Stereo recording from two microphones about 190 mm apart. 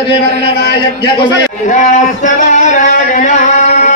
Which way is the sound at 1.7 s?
40° left (ahead or behind).